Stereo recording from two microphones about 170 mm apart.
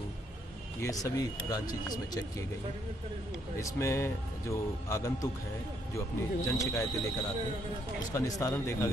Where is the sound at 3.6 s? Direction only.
15° left (ahead or behind).